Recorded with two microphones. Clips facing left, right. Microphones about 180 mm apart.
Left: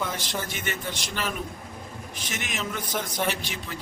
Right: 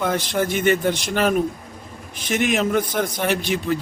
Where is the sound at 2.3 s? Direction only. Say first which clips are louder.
Right 14 dB; 60° right (ahead or behind).